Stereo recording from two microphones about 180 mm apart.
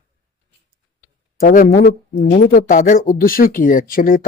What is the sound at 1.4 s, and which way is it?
Speech, 55° left (ahead or behind).